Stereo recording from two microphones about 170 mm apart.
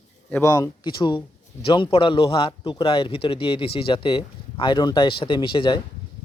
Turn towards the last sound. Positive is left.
turn(degrees=30)  # may be behind; listen again after turning